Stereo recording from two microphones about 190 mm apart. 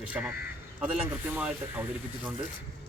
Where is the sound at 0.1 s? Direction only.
5° right (ahead or behind).